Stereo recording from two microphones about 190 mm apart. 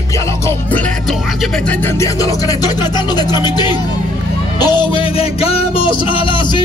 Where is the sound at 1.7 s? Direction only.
15° left (ahead or behind).